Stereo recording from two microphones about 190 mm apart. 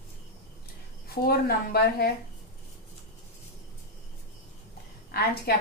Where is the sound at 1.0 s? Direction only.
50° left (ahead or behind).